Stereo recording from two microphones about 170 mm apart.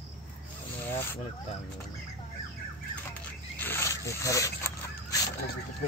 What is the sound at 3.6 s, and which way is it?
Zipper, 15° left (ahead or behind).